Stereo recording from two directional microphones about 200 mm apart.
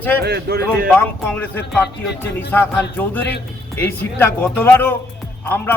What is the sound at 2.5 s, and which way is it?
Speech, 10° left (ahead or behind).